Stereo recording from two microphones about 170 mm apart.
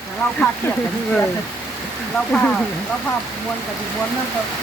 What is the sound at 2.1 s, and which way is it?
Speech, 5° left (ahead or behind).